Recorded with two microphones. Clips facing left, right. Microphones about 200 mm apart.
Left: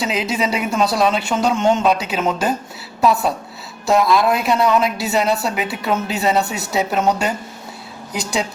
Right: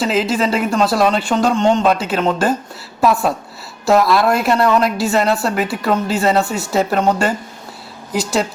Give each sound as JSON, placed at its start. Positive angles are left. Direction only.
{"t": 0.0, "sound": "speech", "side_deg": 0}
{"t": 3.8, "sound": "speech", "side_deg": 0}